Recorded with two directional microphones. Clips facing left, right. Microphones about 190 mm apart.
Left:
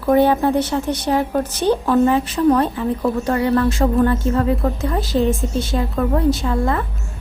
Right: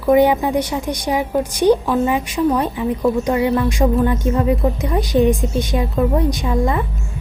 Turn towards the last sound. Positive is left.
turn(degrees=-15)  # may be behind; listen again after turning